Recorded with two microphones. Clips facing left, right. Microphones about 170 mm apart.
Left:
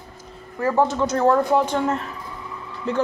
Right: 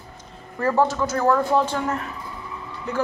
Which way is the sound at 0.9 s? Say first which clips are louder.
Left 2 dB; 25° left (ahead or behind).